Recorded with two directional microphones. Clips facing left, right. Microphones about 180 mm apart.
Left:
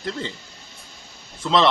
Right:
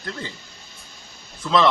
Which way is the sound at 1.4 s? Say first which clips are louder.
Even; 25° left (ahead or behind).